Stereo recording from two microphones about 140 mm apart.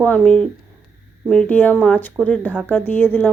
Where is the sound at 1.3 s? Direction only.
10° left (ahead or behind).